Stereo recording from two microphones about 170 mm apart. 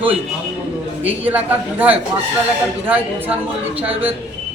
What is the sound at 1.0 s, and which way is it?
A man's voice, 10° right (ahead or behind).